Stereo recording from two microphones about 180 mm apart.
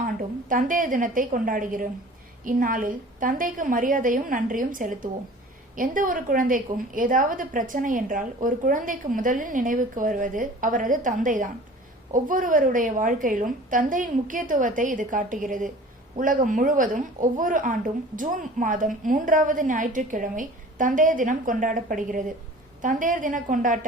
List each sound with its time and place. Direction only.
0.0 s a woman's voice: 50° right (ahead or behind)